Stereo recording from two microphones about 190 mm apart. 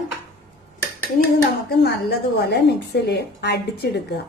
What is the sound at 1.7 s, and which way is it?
A woman's voice, 60° left (ahead or behind).